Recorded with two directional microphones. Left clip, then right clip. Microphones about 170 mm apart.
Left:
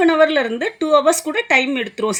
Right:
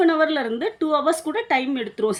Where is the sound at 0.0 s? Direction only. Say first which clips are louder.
Left 5 dB; 45° left (ahead or behind).